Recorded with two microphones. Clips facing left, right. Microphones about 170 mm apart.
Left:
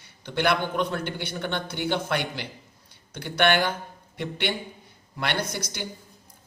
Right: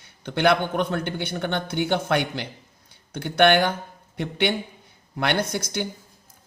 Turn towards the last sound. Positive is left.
turn(degrees=-55)  # may be behind; listen again after turning